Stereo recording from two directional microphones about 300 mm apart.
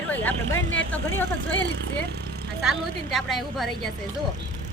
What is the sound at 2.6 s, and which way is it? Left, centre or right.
Speech, centre.